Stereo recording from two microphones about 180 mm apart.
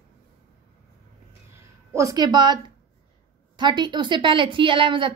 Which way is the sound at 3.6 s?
25° right (ahead or behind).